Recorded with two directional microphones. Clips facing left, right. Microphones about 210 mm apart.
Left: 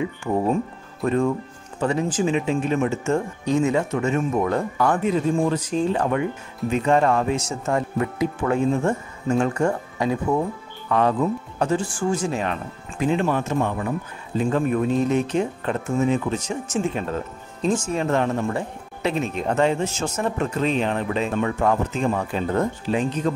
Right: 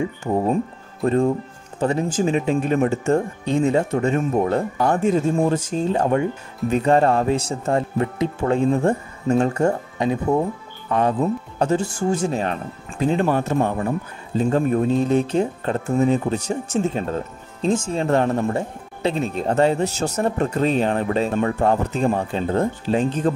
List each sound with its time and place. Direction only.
0.3 s speech: 20° right (ahead or behind)
1.0 s speech: 35° right (ahead or behind)
9.9 s speech: 20° right (ahead or behind)
12.0 s speech: 35° right (ahead or behind)